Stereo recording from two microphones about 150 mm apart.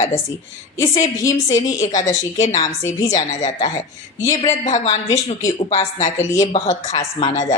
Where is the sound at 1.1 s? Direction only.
20° left (ahead or behind).